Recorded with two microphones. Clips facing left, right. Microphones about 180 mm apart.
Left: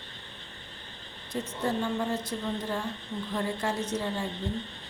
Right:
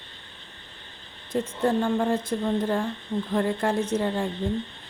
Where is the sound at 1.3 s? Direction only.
50° right (ahead or behind).